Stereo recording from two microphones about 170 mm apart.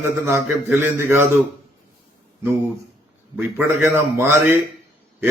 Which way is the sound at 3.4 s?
10° right (ahead or behind).